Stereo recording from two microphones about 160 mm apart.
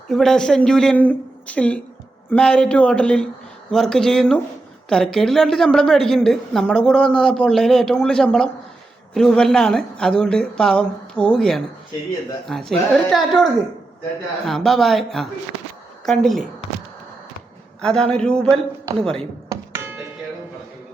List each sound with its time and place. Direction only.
0.1 s a woman's voice: centre (ahead or behind)
17.7 s a woman's voice: 5° left (ahead or behind)
19.5 s doorbell: 15° right (ahead or behind)